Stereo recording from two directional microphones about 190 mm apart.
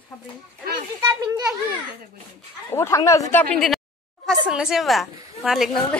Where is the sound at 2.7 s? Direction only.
15° left (ahead or behind).